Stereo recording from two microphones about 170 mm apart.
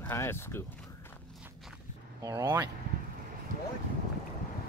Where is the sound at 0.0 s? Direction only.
15° left (ahead or behind).